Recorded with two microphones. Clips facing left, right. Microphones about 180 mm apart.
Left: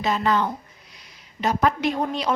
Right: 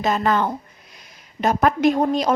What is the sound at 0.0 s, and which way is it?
A woman's voice, 50° right (ahead or behind).